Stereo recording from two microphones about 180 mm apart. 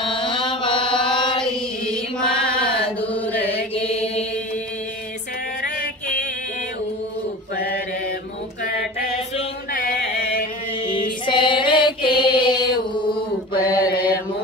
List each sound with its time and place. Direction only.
0.1 s chant: 30° left (ahead or behind)
1.4 s chant: 5° left (ahead or behind)
2.6 s mantra: 10° left (ahead or behind)
3.7 s chant: 35° left (ahead or behind)
10.9 s music: 25° left (ahead or behind)
13.6 s mantra: 55° left (ahead or behind)